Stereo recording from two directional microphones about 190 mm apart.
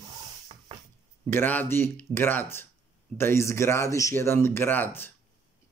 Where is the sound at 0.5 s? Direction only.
30° right (ahead or behind).